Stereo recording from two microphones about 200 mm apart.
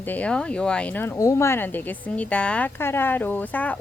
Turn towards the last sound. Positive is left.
turn(degrees=10)  # may be behind; listen again after turning